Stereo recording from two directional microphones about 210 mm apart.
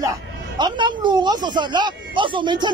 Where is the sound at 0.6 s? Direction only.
20° right (ahead or behind).